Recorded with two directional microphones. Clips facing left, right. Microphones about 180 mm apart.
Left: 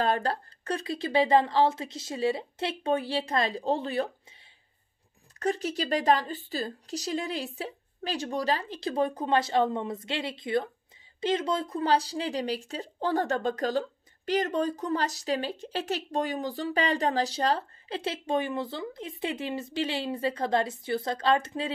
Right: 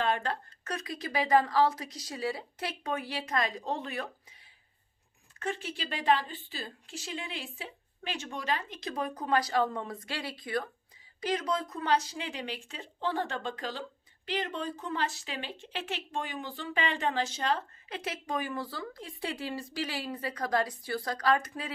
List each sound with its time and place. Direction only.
0.0 s speech: 35° left (ahead or behind)
5.4 s speech: 40° left (ahead or behind)